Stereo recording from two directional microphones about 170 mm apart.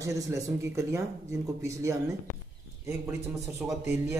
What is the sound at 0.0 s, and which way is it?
Speech, 20° right (ahead or behind).